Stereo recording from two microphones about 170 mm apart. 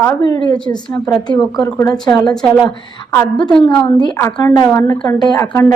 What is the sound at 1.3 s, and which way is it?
A woman's voice, 5° left (ahead or behind).